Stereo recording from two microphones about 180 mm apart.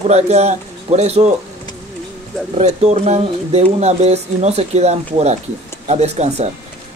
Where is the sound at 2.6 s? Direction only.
40° right (ahead or behind).